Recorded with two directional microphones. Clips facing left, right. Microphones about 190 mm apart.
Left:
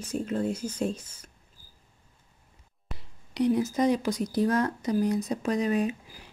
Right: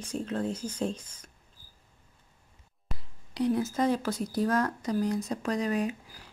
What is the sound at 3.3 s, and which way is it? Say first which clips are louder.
Speech: left 3 dB; 20° left (ahead or behind).